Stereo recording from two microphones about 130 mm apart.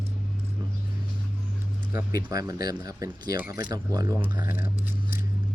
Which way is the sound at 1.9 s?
25° right (ahead or behind).